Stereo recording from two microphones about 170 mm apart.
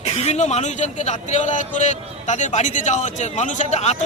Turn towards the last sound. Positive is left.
turn(degrees=40)  # may be behind; listen again after turning